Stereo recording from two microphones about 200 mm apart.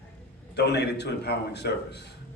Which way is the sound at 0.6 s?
55° left (ahead or behind).